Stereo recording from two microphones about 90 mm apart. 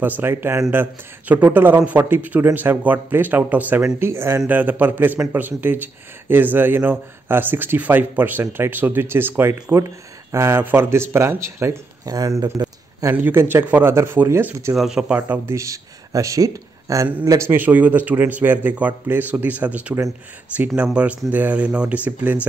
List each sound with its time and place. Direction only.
0.0 s speech: 20° right (ahead or behind)
12.1 s speech: 45° right (ahead or behind)
13.1 s speech: 25° right (ahead or behind)
14.8 s speech: 5° right (ahead or behind)
15.1 s speech: 20° right (ahead or behind)
15.5 s speech: 35° right (ahead or behind); by 22.5 s 20° right (ahead or behind)